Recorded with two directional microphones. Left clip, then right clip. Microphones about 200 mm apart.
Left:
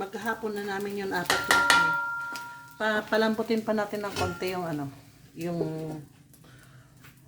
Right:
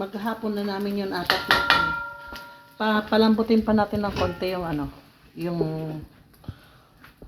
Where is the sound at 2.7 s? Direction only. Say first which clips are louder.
Right 4 dB; 35° right (ahead or behind); by 4.9 s 20° right (ahead or behind).